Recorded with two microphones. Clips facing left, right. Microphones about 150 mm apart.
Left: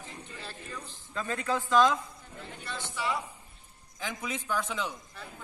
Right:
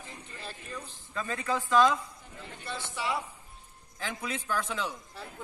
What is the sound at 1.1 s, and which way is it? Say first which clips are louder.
Speech: left 1 dB; centre (ahead or behind).